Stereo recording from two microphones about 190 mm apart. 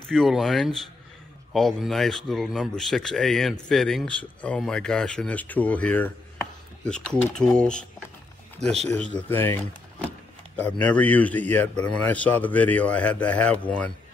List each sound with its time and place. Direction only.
0.1 s a man's voice: centre (ahead or behind)